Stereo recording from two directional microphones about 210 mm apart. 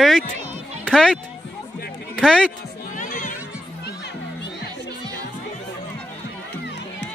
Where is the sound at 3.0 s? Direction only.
40° left (ahead or behind).